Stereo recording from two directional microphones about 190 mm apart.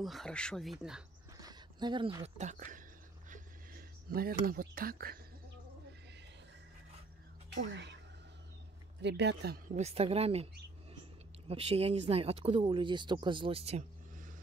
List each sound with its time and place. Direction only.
0.0 s speech: centre (ahead or behind)
1.4 s a sound: 20° right (ahead or behind)
2.3 s speech: 40° right (ahead or behind)
3.3 s a sound: 45° right (ahead or behind)
7.4 s speech: 70° right (ahead or behind)
9.0 s speech: 65° right (ahead or behind)
9.8 s speech: 35° right (ahead or behind)